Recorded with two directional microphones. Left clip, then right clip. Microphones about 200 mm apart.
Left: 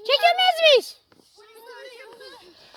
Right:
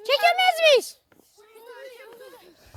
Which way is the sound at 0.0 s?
15° right (ahead or behind).